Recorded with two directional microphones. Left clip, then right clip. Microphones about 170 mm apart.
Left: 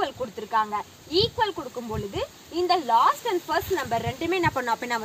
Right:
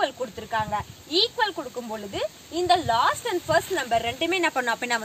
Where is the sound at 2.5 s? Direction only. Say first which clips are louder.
Even; 20° right (ahead or behind).